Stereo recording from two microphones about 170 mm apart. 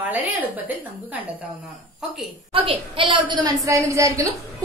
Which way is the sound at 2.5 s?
30° right (ahead or behind).